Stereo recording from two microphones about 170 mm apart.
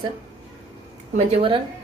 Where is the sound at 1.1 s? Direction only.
30° right (ahead or behind).